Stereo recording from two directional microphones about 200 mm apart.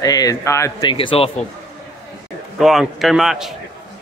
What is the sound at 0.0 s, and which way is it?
Speech, 20° left (ahead or behind).